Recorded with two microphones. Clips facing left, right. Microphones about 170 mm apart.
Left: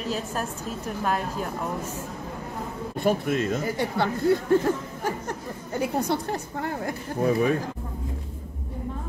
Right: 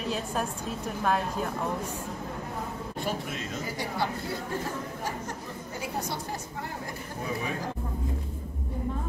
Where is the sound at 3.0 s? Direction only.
55° left (ahead or behind).